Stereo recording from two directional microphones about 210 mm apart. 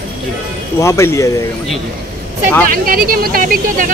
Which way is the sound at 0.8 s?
15° left (ahead or behind).